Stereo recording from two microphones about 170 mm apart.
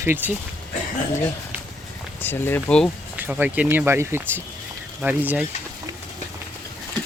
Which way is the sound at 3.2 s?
10° right (ahead or behind).